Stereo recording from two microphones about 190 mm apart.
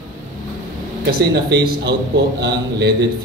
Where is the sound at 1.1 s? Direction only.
60° right (ahead or behind).